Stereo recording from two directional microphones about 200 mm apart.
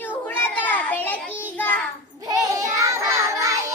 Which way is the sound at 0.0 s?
10° left (ahead or behind).